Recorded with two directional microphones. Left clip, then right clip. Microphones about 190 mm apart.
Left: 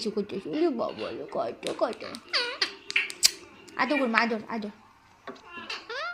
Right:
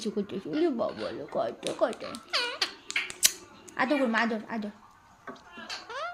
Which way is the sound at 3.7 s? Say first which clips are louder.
Left 2 dB; 20° right (ahead or behind).